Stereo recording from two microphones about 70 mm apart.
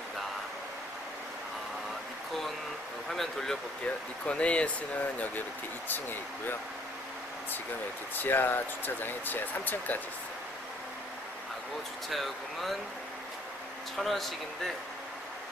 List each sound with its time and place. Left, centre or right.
3.1 s speech: centre
3.8 s speech: centre
8.2 s speech: left
12.1 s speech: centre
13.9 s speech: centre